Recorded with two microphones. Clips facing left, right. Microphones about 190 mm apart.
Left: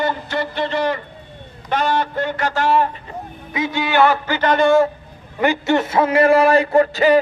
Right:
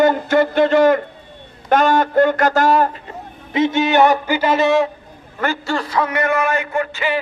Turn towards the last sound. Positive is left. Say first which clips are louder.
# left 7 dB
turn(degrees=40)  # may be behind; listen again after turning